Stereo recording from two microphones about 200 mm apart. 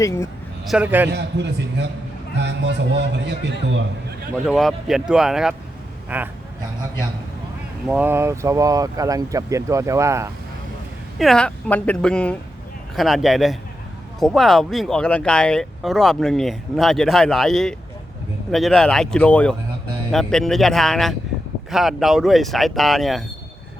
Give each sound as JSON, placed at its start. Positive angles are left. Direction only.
{"t": 0.0, "sound": "speech", "side_deg": 15}
{"t": 0.7, "sound": "speech", "side_deg": -10}
{"t": 1.1, "sound": "speech", "side_deg": -60}
{"t": 4.4, "sound": "speech", "side_deg": 0}
{"t": 7.9, "sound": "speech", "side_deg": -10}
{"t": 11.2, "sound": "speech", "side_deg": 5}